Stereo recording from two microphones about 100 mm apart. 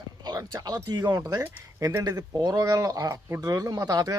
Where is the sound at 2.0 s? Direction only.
35° right (ahead or behind).